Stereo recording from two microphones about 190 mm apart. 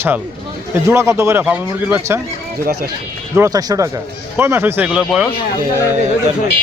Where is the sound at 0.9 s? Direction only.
15° right (ahead or behind).